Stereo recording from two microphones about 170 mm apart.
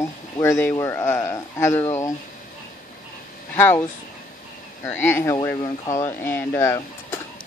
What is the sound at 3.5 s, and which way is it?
Speech, 15° left (ahead or behind).